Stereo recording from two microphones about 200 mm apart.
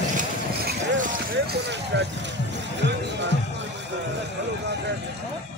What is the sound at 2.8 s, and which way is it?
Music, 60° right (ahead or behind).